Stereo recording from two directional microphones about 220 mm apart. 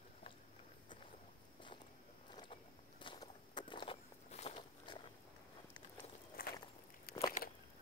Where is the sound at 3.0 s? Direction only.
20° left (ahead or behind).